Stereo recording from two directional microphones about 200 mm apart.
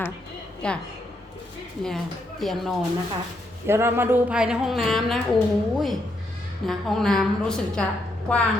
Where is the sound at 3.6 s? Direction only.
10° right (ahead or behind).